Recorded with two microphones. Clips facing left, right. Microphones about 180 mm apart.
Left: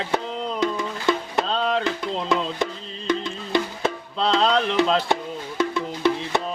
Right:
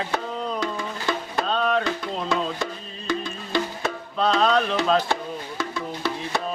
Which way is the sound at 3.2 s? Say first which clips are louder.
Left 2 dB; 25° left (ahead or behind).